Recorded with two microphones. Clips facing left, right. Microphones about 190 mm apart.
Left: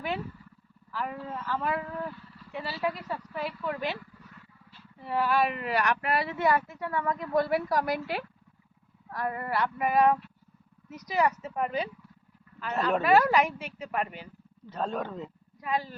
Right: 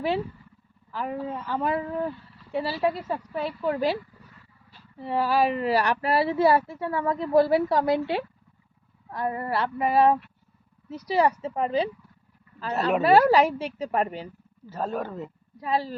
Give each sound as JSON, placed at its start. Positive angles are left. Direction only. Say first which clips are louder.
{"t": 1.0, "sound": "speech", "louder": "right 5 dB", "side_deg": -35}
{"t": 4.9, "sound": "speech", "louder": "right 3 dB", "side_deg": -30}
{"t": 14.7, "sound": "a man's voice", "louder": "right 2 dB", "side_deg": -5}
{"t": 15.6, "sound": "speech", "louder": "right 4 dB", "side_deg": -35}